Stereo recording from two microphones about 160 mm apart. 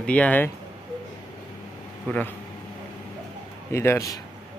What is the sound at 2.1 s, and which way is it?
Speech, 10° left (ahead or behind).